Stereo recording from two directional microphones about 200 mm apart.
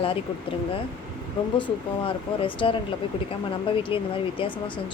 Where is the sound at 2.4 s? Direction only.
25° left (ahead or behind).